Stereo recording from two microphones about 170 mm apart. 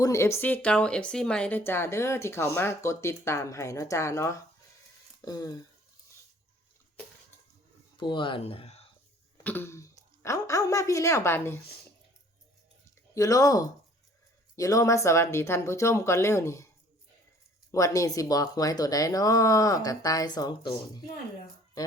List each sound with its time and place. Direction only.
0.0 s a woman's voice: 15° left (ahead or behind)
7.9 s speech: 30° left (ahead or behind)
9.4 s speech: 10° left (ahead or behind)
13.1 s a woman's voice: 20° left (ahead or behind)
17.7 s speech: 20° left (ahead or behind)